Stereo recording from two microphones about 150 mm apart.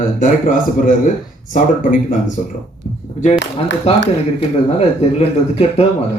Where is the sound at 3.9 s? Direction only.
45° left (ahead or behind).